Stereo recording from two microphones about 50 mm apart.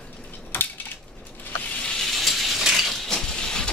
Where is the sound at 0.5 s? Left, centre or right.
Left.